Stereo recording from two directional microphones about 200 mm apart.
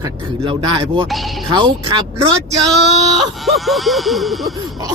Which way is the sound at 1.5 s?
25° right (ahead or behind).